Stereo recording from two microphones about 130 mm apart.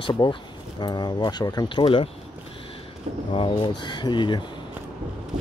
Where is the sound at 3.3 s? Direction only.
40° left (ahead or behind).